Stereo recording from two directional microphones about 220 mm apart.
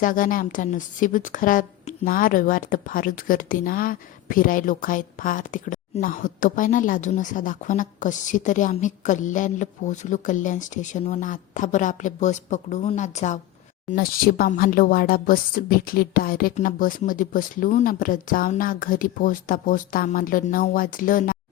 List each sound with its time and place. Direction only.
0.0 s a woman's voice: 40° left (ahead or behind)